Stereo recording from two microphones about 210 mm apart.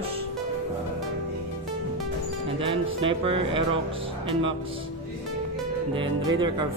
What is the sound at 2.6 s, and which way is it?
Speech, 25° right (ahead or behind).